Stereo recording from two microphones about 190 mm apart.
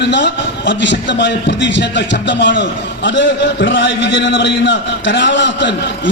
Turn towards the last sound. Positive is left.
turn(degrees=65)  # may be behind; listen again after turning